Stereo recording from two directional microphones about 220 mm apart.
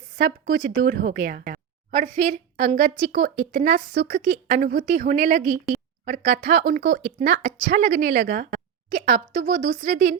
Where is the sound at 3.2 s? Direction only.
40° right (ahead or behind).